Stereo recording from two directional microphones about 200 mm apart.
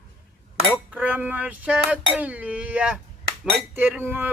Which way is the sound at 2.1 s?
5° right (ahead or behind).